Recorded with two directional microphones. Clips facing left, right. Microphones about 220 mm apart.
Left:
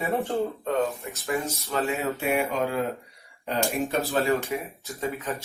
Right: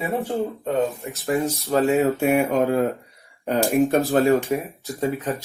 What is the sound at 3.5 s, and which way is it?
Speech, 45° right (ahead or behind).